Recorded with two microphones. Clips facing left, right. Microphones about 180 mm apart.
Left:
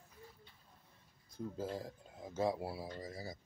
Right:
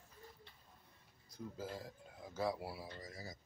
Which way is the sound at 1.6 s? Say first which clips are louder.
Left 5 dB; 30° left (ahead or behind).